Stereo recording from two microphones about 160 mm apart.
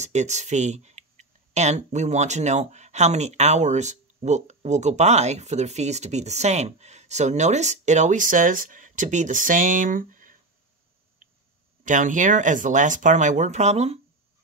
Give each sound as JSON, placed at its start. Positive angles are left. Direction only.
{"t": 0.0, "sound": "speech", "side_deg": -45}
{"t": 11.8, "sound": "speech", "side_deg": -55}